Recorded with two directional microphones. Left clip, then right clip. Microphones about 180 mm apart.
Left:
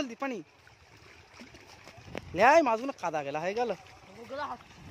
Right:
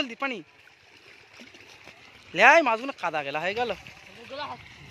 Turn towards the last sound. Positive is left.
turn(degrees=40)  # may be behind; listen again after turning